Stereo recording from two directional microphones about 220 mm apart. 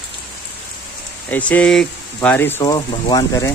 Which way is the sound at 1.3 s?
5° left (ahead or behind).